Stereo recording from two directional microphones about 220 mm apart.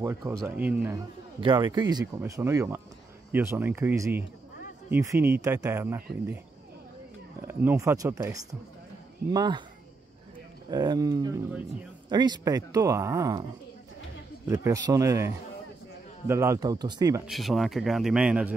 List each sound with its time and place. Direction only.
0.0 s speech: 10° right (ahead or behind)
1.4 s speech: 20° right (ahead or behind)
7.4 s speech: 10° right (ahead or behind)
10.7 s speech: 20° right (ahead or behind)
14.5 s speech: 15° right (ahead or behind)
17.3 s speech: centre (ahead or behind)